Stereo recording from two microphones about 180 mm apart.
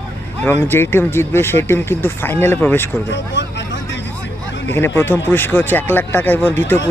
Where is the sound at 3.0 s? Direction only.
80° left.